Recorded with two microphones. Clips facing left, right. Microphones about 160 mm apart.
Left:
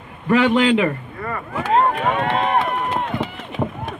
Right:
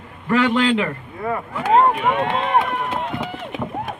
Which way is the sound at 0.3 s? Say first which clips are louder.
Left 2 dB; 20° left (ahead or behind).